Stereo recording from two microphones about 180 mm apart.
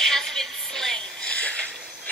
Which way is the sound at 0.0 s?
Centre (ahead or behind).